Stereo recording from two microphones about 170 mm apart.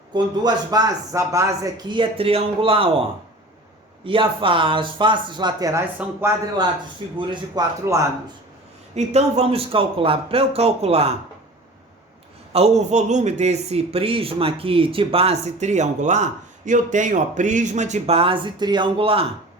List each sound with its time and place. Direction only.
0.1 s speech: 25° right (ahead or behind)
4.0 s speech: 30° right (ahead or behind); by 6.3 s 15° right (ahead or behind)
7.2 s speech: 25° right (ahead or behind)
9.0 s speech: 40° right (ahead or behind)
12.5 s speech: 40° right (ahead or behind)